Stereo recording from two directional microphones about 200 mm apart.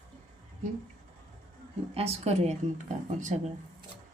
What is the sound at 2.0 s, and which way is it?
Speech, 30° right (ahead or behind).